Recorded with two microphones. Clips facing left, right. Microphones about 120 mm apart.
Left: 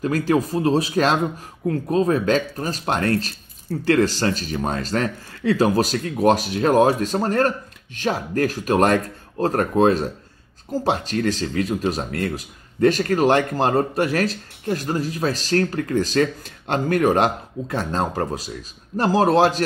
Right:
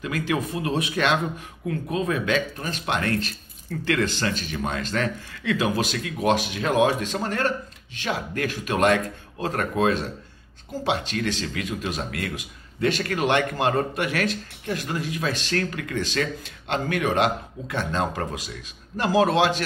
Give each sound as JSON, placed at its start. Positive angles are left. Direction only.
{"t": 0.0, "sound": "speech", "side_deg": 40}